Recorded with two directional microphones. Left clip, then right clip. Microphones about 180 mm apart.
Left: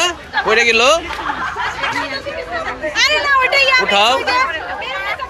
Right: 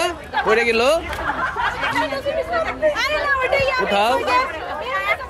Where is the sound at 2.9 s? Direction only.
65° right (ahead or behind); by 3.9 s 45° right (ahead or behind).